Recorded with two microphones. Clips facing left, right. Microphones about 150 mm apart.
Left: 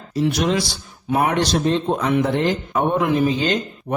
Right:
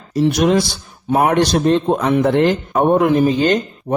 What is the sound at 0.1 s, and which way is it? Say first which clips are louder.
Speech: right 5 dB; 45° right (ahead or behind).